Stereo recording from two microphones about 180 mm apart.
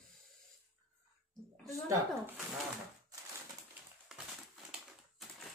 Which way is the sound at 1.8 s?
20° right (ahead or behind).